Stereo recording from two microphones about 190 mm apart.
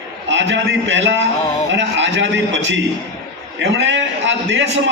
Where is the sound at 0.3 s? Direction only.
75° right (ahead or behind).